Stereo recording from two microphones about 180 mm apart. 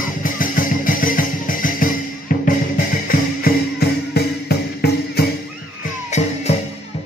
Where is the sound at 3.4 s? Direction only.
60° left (ahead or behind).